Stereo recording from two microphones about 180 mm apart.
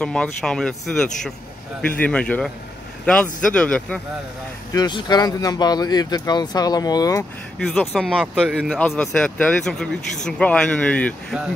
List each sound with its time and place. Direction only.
0.0 s speech: 5° left (ahead or behind)
4.7 s speech: 25° left (ahead or behind)
7.5 s speech: 5° left (ahead or behind)